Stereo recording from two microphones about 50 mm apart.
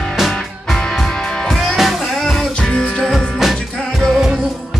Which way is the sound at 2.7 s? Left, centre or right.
Left.